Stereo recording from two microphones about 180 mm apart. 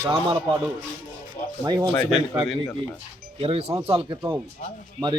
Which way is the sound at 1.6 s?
25° right (ahead or behind).